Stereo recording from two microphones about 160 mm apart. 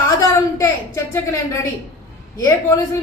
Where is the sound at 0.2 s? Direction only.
20° left (ahead or behind).